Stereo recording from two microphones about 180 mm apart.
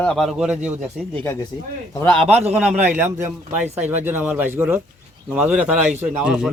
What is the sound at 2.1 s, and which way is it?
Speech, 35° right (ahead or behind).